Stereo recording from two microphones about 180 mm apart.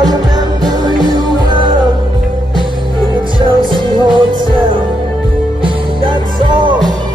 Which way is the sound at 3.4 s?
25° right (ahead or behind).